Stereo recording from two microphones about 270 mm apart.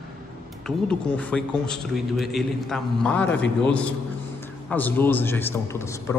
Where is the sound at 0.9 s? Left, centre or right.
Centre.